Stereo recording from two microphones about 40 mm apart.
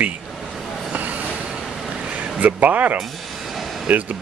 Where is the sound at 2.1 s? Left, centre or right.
Right.